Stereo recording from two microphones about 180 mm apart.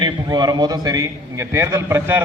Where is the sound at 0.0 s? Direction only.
25° right (ahead or behind).